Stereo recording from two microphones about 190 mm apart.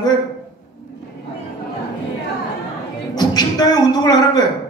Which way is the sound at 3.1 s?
20° left (ahead or behind).